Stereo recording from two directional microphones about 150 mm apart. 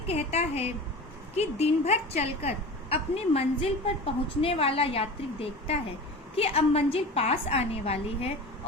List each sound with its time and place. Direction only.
0.1 s a woman's voice: 45° left (ahead or behind)